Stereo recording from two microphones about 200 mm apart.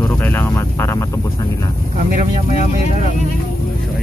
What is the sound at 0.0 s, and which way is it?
Vehicle, 10° left (ahead or behind).